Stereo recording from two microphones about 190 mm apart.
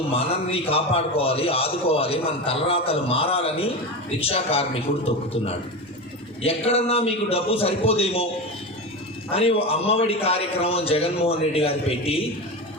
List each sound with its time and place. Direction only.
0.1 s a man's voice: 30° left (ahead or behind)
9.3 s a man's voice: 30° left (ahead or behind)